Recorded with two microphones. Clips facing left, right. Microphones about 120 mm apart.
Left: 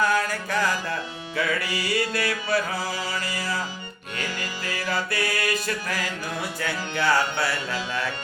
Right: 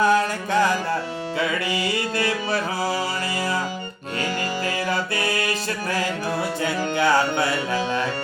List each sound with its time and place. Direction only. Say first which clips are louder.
0.0 s music: right 4 dB; 25° right (ahead or behind)
4.9 s music: right 2 dB; 25° right (ahead or behind)